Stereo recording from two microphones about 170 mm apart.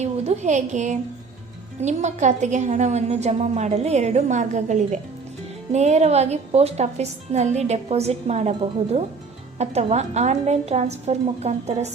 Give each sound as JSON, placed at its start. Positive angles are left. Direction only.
{"t": 0.0, "sound": "a woman's voice", "side_deg": -45}